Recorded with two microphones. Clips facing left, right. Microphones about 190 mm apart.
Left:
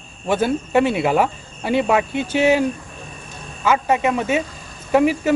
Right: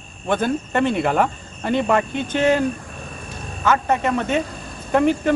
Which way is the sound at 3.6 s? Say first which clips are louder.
Left 1 dB; 10° left (ahead or behind).